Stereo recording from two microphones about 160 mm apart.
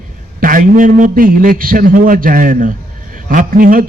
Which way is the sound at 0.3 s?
60° right (ahead or behind).